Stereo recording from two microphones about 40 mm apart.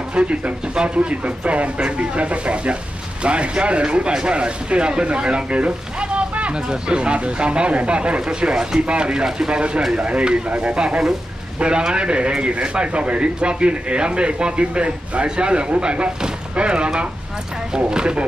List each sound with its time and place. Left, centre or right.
0.1 s speech: right